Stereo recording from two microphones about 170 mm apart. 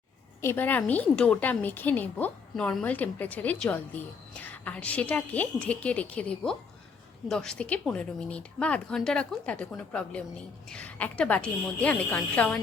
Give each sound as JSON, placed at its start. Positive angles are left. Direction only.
{"t": 0.4, "sound": "a woman's voice", "side_deg": 10}